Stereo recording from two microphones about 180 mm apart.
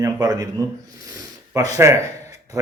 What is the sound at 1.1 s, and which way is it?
Snort, 20° right (ahead or behind).